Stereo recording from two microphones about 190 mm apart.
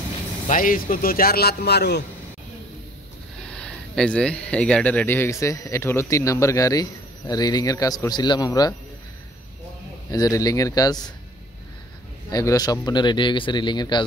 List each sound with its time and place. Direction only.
0.5 s speech: 45° left (ahead or behind)
3.4 s speech: 5° left (ahead or behind)
10.1 s speech: 20° left (ahead or behind)
12.3 s speech: 20° left (ahead or behind)